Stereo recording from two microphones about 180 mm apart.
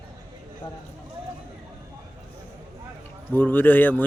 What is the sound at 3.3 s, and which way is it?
Speech, 10° left (ahead or behind).